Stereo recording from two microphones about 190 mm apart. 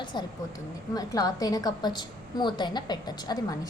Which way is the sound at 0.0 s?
25° left (ahead or behind).